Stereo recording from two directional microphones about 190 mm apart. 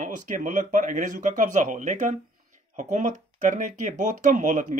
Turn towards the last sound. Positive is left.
turn(degrees=-40)  # may be behind; listen again after turning